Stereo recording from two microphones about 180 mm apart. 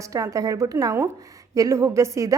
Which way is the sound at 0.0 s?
20° right (ahead or behind).